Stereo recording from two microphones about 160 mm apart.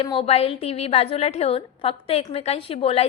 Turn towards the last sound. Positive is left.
turn(degrees=35)  # may be behind; listen again after turning